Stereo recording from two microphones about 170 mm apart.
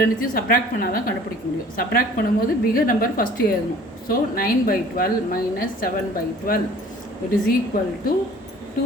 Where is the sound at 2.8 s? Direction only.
55° left (ahead or behind).